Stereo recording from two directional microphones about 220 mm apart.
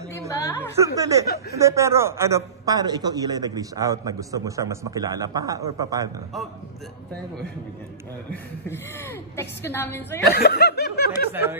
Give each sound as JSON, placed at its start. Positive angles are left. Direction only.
{"t": 0.3, "sound": "a woman's voice", "side_deg": 10}
{"t": 0.7, "sound": "a man's voice", "side_deg": -15}
{"t": 8.3, "sound": "a woman's voice", "side_deg": 10}
{"t": 10.3, "sound": "snicker", "side_deg": 45}